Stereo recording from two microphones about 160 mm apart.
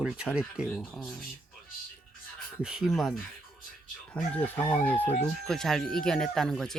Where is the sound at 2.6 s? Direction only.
5° right (ahead or behind).